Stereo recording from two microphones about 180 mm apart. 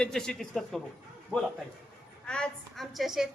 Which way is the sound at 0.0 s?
5° left (ahead or behind).